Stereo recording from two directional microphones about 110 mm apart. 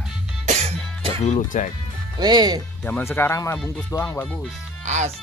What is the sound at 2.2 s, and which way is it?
Speech, 40° right (ahead or behind).